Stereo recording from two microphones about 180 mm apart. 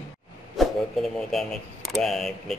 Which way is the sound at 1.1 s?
Centre (ahead or behind).